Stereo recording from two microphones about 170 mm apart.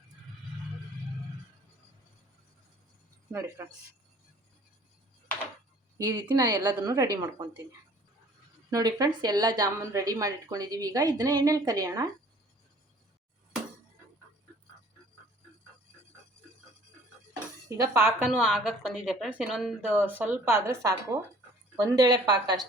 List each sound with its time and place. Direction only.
3.3 s speech: 15° right (ahead or behind)
6.0 s speech: 20° right (ahead or behind)
8.7 s speech: 25° right (ahead or behind)
17.7 s speech: 15° right (ahead or behind)